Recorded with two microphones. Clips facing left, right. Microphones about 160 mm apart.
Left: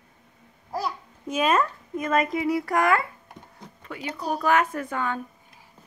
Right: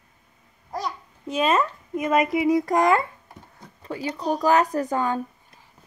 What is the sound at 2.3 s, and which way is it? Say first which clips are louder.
Child singing: right 4 dB; 15° right (ahead or behind).